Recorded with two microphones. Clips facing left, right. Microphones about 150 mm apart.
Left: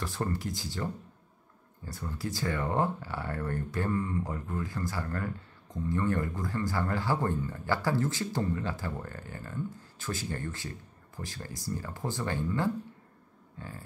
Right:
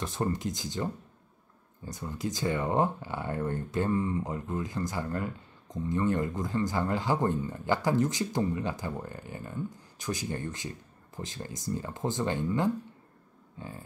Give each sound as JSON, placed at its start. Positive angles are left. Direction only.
{"t": 0.0, "sound": "speech", "side_deg": -20}